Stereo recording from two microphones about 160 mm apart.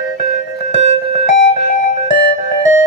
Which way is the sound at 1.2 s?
55° left (ahead or behind).